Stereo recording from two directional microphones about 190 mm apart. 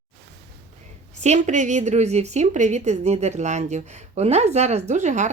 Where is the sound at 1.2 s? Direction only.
40° right (ahead or behind).